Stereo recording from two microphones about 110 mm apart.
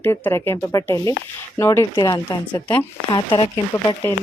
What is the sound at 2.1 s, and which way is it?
Speech, 40° left (ahead or behind).